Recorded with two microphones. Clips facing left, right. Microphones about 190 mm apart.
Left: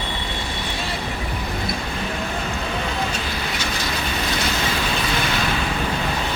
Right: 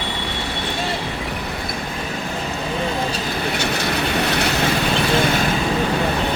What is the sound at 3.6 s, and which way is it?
Train, 60° right (ahead or behind).